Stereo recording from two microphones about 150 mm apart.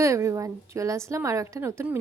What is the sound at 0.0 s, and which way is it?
A woman's voice, 20° right (ahead or behind).